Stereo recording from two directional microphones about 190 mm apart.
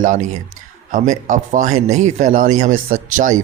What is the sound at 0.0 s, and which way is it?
A man's voice, 40° right (ahead or behind).